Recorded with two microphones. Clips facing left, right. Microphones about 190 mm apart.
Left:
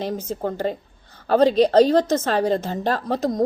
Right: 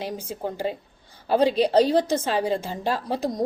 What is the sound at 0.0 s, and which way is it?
A woman's voice, 10° right (ahead or behind).